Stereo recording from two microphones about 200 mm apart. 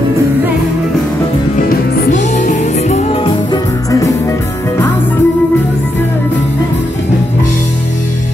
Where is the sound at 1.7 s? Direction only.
40° left (ahead or behind).